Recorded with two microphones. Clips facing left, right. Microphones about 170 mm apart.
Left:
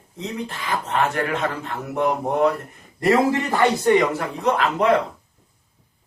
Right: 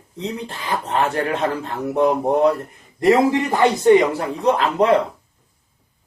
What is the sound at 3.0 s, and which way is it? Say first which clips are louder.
Speech: right 3 dB; 20° right (ahead or behind).